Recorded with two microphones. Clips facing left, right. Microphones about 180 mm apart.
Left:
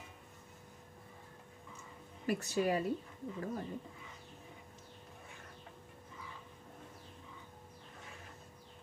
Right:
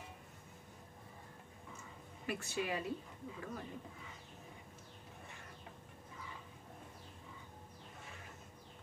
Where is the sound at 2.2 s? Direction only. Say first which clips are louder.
Left 6 dB; 40° left (ahead or behind).